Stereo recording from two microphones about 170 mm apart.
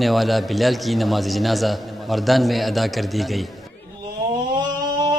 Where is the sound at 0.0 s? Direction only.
Centre (ahead or behind).